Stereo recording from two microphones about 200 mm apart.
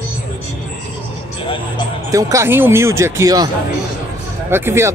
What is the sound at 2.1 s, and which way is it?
Speech, 15° right (ahead or behind).